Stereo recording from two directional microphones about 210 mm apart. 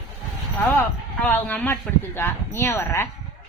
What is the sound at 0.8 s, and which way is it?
Speech, 5° left (ahead or behind).